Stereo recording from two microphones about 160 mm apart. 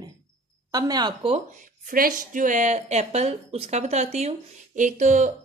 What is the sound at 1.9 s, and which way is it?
Speech, 60° right (ahead or behind).